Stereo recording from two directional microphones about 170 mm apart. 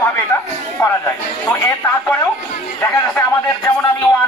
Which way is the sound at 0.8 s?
15° left (ahead or behind).